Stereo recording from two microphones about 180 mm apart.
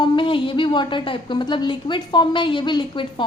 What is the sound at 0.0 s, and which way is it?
A woman's voice, 30° left (ahead or behind).